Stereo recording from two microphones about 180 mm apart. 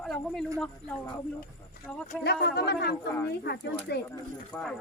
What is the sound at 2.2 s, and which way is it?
Speech, 65° left (ahead or behind).